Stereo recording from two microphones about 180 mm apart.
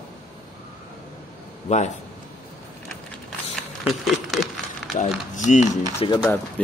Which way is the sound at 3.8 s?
Centre (ahead or behind).